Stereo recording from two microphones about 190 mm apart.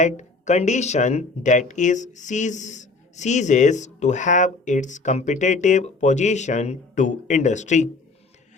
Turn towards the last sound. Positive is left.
turn(degrees=40)  # may be behind; listen again after turning